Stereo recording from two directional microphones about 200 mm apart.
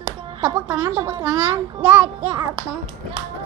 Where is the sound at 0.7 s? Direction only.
20° right (ahead or behind).